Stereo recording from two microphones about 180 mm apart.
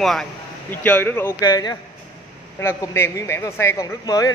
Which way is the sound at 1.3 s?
20° left (ahead or behind).